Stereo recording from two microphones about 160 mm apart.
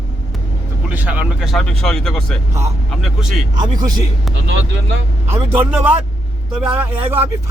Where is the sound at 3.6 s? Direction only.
25° right (ahead or behind).